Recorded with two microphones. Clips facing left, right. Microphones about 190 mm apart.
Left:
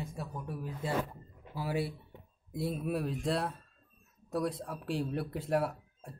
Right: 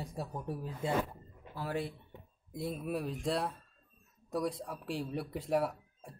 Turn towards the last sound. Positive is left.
turn(degrees=0)  # may be behind; listen again after turning